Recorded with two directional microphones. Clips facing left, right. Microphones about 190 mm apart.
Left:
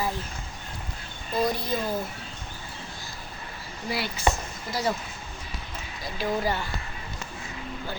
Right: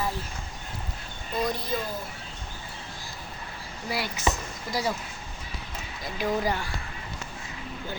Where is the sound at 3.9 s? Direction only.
10° right (ahead or behind).